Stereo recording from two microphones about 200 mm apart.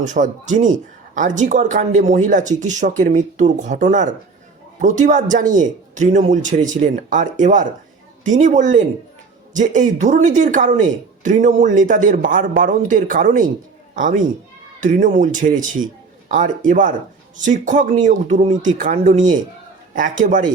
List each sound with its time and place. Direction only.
0.0 s speech: 40° right (ahead or behind)